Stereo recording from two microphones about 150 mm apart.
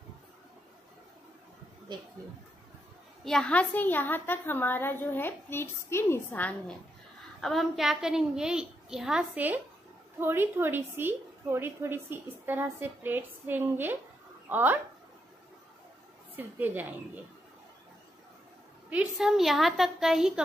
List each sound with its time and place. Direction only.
1.9 s speech: 30° right (ahead or behind)
3.3 s a woman's voice: 5° left (ahead or behind)
7.4 s a woman's voice: centre (ahead or behind)
16.3 s a woman's voice: 10° right (ahead or behind)
18.9 s a woman's voice: 5° right (ahead or behind)